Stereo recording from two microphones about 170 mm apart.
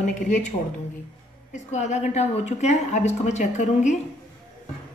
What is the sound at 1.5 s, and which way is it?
A woman's voice, 40° left (ahead or behind).